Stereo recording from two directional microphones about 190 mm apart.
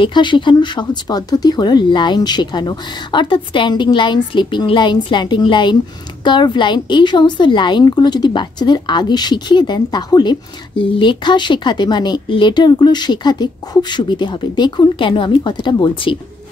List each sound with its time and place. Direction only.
0.0 s speech: 25° left (ahead or behind)